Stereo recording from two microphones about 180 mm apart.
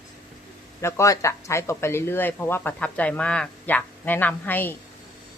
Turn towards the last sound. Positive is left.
turn(degrees=10)  # may be behind; listen again after turning